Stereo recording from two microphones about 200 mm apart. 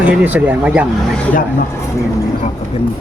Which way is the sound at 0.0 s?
10° right (ahead or behind).